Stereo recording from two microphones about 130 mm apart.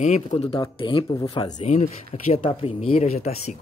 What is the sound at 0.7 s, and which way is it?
Speech, 40° left (ahead or behind).